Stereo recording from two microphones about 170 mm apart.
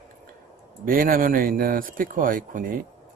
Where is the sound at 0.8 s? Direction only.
55° right (ahead or behind).